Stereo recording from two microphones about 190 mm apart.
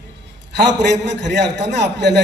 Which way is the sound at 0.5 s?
65° right (ahead or behind).